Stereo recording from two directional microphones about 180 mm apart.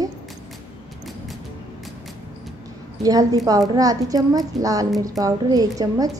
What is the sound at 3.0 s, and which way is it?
A woman's voice, 20° right (ahead or behind).